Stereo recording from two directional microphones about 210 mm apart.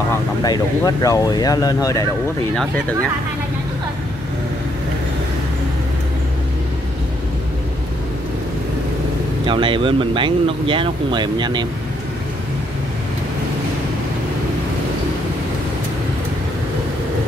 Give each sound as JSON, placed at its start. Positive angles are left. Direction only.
{"t": 0.4, "sound": "speech", "side_deg": 20}
{"t": 9.5, "sound": "speech", "side_deg": -25}